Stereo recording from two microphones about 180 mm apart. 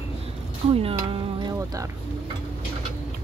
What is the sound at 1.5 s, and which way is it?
Music, 15° right (ahead or behind).